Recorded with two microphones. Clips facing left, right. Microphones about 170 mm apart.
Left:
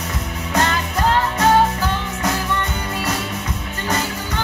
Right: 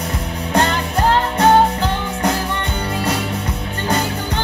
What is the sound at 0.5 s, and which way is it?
Music, 30° right (ahead or behind).